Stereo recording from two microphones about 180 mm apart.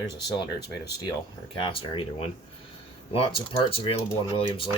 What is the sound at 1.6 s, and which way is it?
Speech, 30° left (ahead or behind).